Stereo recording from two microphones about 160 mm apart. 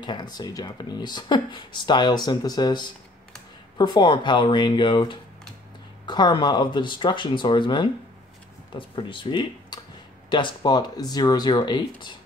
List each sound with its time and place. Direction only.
0.0 s speech: 30° left (ahead or behind)